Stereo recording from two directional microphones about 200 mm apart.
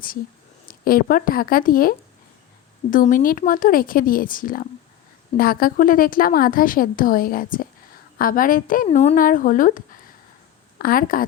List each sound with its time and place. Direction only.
0.7 s a woman's voice: 45° left (ahead or behind)